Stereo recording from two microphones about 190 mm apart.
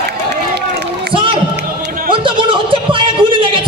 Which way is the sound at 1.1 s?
25° right (ahead or behind).